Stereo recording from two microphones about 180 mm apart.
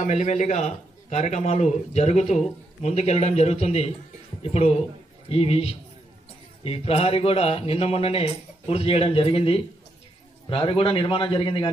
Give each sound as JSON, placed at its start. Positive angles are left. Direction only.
{"t": 0.0, "sound": "a man's voice", "side_deg": 40}